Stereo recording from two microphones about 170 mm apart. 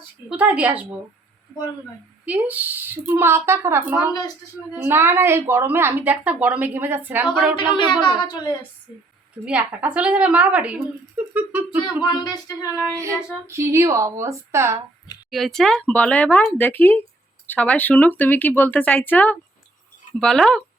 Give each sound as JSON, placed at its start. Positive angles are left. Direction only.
{"t": 0.3, "sound": "a woman's voice", "side_deg": -10}
{"t": 2.2, "sound": "a woman's voice", "side_deg": -10}
{"t": 7.5, "sound": "speech", "side_deg": 30}
{"t": 9.4, "sound": "a woman's voice", "side_deg": -10}
{"t": 12.0, "sound": "speech", "side_deg": 25}
{"t": 12.9, "sound": "a woman's voice", "side_deg": -15}
{"t": 15.3, "sound": "speech", "side_deg": 0}